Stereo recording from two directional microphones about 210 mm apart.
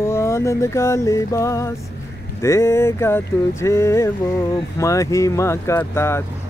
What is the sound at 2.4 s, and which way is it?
Speech, 15° left (ahead or behind).